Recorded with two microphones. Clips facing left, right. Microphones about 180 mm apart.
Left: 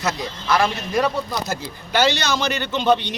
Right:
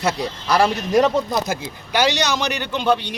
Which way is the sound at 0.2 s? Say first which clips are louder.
Right 1 dB; 35° right (ahead or behind).